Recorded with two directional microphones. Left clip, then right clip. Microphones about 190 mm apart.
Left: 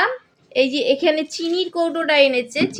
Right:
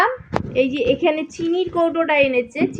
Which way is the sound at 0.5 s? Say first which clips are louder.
Left 1 dB; 10° right (ahead or behind).